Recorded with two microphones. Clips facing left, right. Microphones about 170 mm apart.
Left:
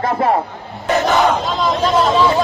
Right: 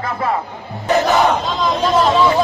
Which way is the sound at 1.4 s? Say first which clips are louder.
Left 1 dB; centre (ahead or behind).